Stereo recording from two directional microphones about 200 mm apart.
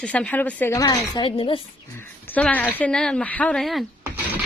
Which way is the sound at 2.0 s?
10° left (ahead or behind).